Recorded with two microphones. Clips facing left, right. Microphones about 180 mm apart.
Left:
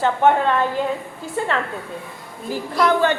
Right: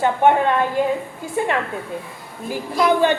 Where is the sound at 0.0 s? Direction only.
15° right (ahead or behind).